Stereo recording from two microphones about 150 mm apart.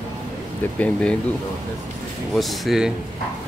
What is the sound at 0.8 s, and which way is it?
Speech, 10° left (ahead or behind).